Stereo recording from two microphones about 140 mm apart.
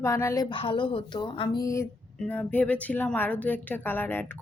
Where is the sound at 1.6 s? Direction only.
20° left (ahead or behind).